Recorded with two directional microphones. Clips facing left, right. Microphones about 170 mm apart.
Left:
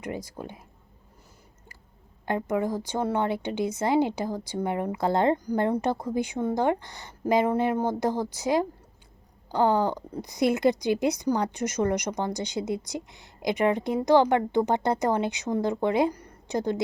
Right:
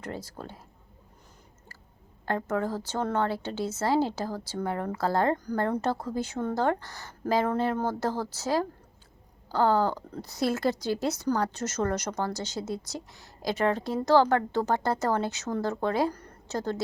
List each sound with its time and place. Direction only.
0.0 s a woman's voice: 15° left (ahead or behind)
2.2 s a woman's voice: 15° left (ahead or behind)